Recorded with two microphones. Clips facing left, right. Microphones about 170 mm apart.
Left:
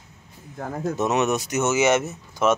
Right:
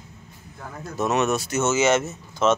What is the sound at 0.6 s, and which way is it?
Speech, 55° left (ahead or behind).